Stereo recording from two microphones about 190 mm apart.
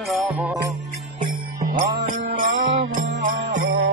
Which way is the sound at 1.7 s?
45° right (ahead or behind).